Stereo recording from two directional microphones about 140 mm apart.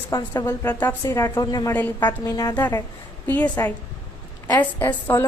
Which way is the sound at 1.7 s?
15° left (ahead or behind).